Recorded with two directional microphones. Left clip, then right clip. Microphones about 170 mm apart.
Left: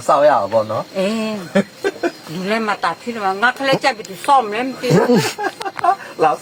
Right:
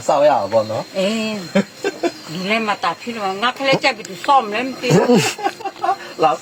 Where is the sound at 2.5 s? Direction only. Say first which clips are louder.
Even; 15° left (ahead or behind).